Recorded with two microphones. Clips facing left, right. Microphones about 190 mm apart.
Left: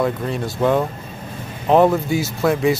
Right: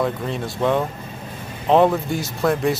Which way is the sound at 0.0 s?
Centre (ahead or behind).